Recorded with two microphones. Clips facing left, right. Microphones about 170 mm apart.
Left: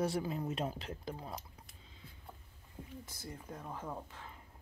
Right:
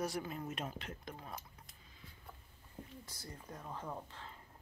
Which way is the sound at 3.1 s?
10° left (ahead or behind).